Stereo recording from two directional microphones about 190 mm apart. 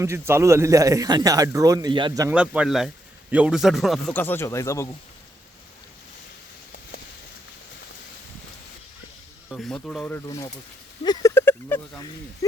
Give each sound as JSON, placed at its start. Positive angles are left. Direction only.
{"t": 0.0, "sound": "a man's voice", "side_deg": -15}
{"t": 2.3, "sound": "a man's voice", "side_deg": -5}
{"t": 9.5, "sound": "a man's voice", "side_deg": 5}
{"t": 10.2, "sound": "speech", "side_deg": 25}
{"t": 11.0, "sound": "a sound", "side_deg": 20}
{"t": 12.4, "sound": "speech", "side_deg": 15}